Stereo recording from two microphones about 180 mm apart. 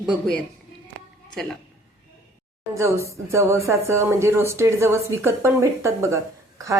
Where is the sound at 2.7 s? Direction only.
15° right (ahead or behind).